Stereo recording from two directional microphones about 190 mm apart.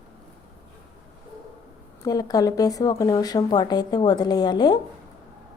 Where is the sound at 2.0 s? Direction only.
20° left (ahead or behind).